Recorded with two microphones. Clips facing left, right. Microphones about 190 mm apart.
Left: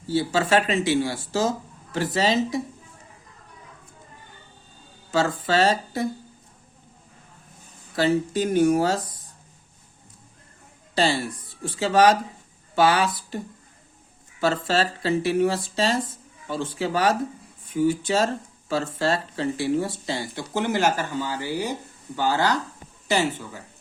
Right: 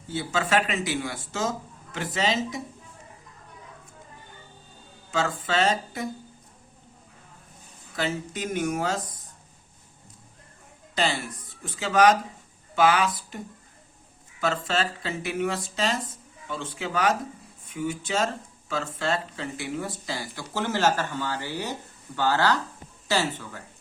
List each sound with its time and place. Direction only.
0.1 s speech: 35° left (ahead or behind)
5.1 s speech: 35° left (ahead or behind)
7.9 s speech: 35° left (ahead or behind)
10.9 s speech: 30° left (ahead or behind)
14.4 s speech: 35° left (ahead or behind); by 23.6 s 10° left (ahead or behind)